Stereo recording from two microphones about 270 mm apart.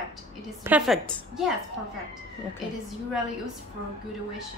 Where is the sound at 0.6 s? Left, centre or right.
Centre.